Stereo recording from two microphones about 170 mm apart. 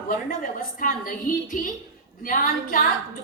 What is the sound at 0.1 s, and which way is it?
A woman's voice, 50° left (ahead or behind).